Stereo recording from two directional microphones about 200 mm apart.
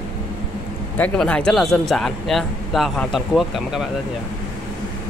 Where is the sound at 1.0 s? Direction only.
5° left (ahead or behind).